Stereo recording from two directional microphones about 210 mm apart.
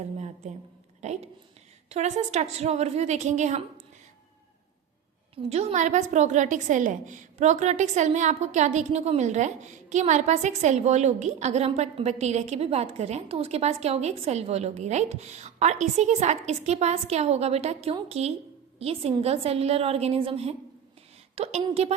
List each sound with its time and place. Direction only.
1.0 s a woman's voice: 30° right (ahead or behind)
5.3 s a woman's voice: 30° right (ahead or behind)